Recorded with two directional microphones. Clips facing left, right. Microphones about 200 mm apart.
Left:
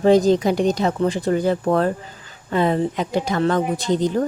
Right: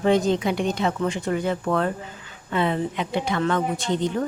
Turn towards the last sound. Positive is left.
turn(degrees=35)  # may be behind; listen again after turning